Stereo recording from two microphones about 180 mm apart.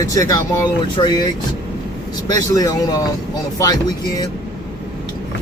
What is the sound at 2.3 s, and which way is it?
Speech, 20° left (ahead or behind).